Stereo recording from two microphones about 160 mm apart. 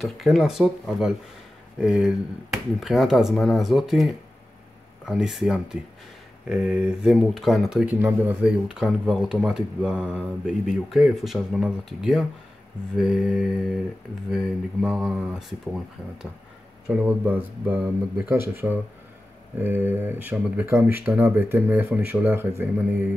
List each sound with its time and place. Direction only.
0.0 s speech: centre (ahead or behind); by 18.4 s 20° right (ahead or behind)
19.6 s speech: 15° right (ahead or behind)